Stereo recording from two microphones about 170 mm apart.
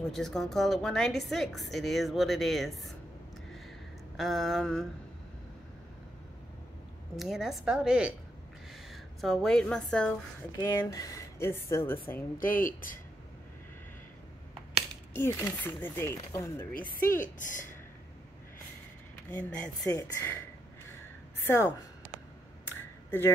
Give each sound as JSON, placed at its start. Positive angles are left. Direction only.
{"t": 0.1, "sound": "a woman's voice", "side_deg": 0}
{"t": 4.2, "sound": "a woman's voice", "side_deg": 0}
{"t": 7.2, "sound": "a woman's voice", "side_deg": 0}
{"t": 10.5, "sound": "a woman's voice", "side_deg": 15}
{"t": 12.4, "sound": "speech", "side_deg": 55}
{"t": 15.1, "sound": "a woman's voice", "side_deg": 15}
{"t": 17.2, "sound": "speech", "side_deg": 50}
{"t": 19.3, "sound": "a woman's voice", "side_deg": 10}
{"t": 21.5, "sound": "a woman's voice", "side_deg": 10}
{"t": 22.8, "sound": "a sound", "side_deg": 10}